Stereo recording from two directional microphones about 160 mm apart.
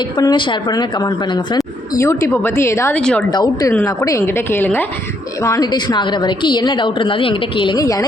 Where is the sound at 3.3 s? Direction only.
25° left (ahead or behind).